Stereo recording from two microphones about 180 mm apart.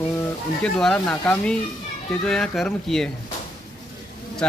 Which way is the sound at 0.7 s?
5° left (ahead or behind).